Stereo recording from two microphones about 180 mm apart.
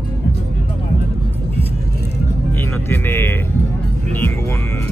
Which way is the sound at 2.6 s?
15° left (ahead or behind).